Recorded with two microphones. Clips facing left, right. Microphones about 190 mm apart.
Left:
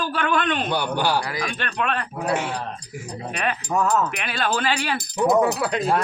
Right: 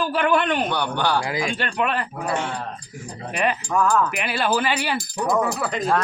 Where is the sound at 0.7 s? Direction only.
10° left (ahead or behind).